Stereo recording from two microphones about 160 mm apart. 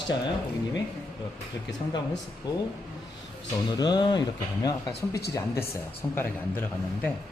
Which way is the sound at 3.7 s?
25° left (ahead or behind).